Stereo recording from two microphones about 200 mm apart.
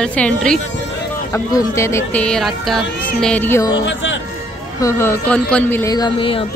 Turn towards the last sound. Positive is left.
turn(degrees=25)  # may be behind; listen again after turning